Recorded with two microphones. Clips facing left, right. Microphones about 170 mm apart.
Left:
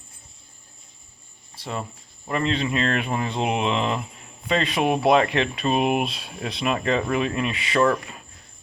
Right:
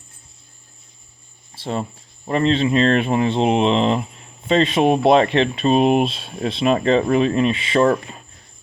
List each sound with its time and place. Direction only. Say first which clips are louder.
1.5 s speech: right 6 dB; 30° right (ahead or behind)